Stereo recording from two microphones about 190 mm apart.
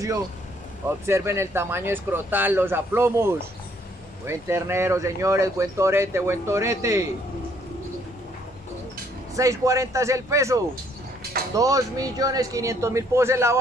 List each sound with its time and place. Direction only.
0.8 s speech: 15° right (ahead or behind)
9.3 s speech: 15° right (ahead or behind)